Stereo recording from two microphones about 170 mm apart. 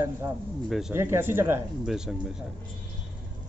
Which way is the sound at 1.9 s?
Centre (ahead or behind).